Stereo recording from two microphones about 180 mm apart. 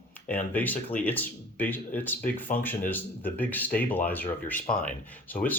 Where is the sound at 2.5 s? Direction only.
50° left (ahead or behind).